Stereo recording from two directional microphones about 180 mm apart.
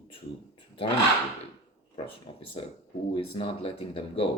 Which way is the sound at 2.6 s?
35° left (ahead or behind).